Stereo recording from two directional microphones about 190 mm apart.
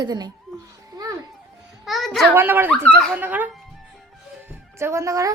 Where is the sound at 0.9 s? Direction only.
20° right (ahead or behind).